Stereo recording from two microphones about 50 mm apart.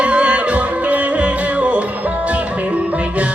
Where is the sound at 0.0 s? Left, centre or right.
Right.